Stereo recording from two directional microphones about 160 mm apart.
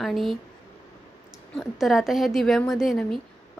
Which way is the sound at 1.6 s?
Centre (ahead or behind).